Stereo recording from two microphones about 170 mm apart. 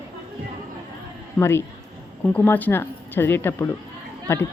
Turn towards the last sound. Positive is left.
turn(degrees=15)  # may be behind; listen again after turning